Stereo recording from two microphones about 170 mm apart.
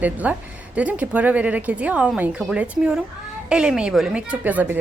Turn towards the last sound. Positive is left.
turn(degrees=-10)  # may be behind; listen again after turning